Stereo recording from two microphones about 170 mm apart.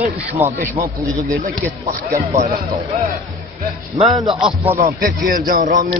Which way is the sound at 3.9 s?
25° right (ahead or behind).